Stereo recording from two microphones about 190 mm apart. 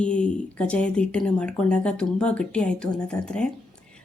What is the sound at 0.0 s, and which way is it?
A woman's voice, 5° left (ahead or behind).